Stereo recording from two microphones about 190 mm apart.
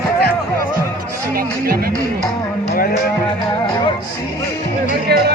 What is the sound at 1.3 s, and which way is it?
Music, 50° right (ahead or behind).